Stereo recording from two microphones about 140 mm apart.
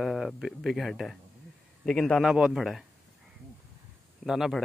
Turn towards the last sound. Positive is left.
turn(degrees=0)  # may be behind; listen again after turning